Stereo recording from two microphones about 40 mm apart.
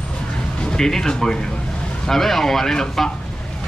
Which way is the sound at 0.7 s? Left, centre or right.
Centre.